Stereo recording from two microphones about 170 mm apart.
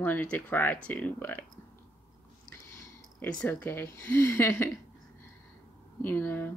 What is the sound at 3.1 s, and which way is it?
Speech, 10° left (ahead or behind).